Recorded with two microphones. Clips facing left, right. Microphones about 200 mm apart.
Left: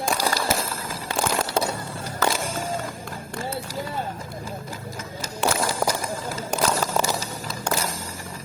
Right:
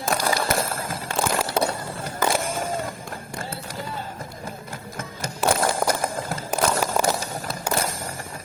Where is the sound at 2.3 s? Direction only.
55° right (ahead or behind).